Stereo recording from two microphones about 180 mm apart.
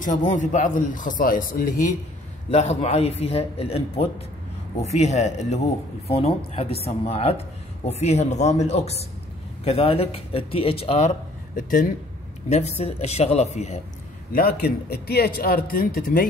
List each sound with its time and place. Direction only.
0.0 s a man's voice: 45° left (ahead or behind)
2.5 s speech: 35° left (ahead or behind)
14.3 s speech: 55° left (ahead or behind)